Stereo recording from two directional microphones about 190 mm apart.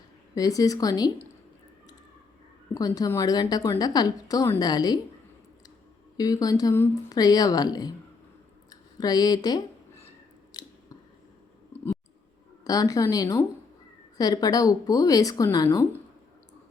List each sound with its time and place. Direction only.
0.3 s a woman's voice: 20° left (ahead or behind)
2.7 s a woman's voice: 20° left (ahead or behind)
6.1 s a woman's voice: 20° left (ahead or behind)
8.7 s a sound: 20° left (ahead or behind)
10.5 s chewing: 20° left (ahead or behind)
12.6 s a woman's voice: 20° left (ahead or behind)